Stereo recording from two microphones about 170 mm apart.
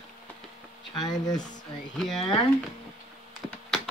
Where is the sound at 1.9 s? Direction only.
Centre (ahead or behind).